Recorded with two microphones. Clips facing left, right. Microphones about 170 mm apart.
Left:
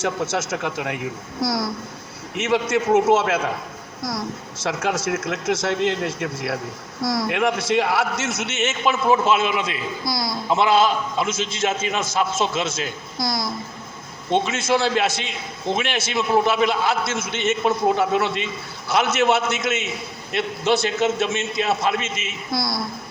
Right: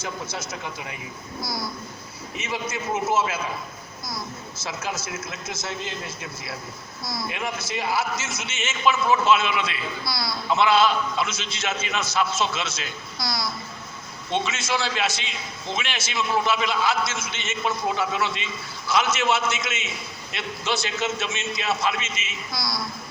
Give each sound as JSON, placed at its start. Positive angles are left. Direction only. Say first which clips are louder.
{"t": 0.0, "sound": "a man's voice", "louder": "left 9 dB", "side_deg": 80}